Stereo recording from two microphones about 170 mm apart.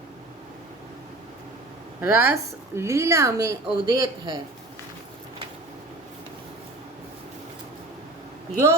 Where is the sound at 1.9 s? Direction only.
15° right (ahead or behind).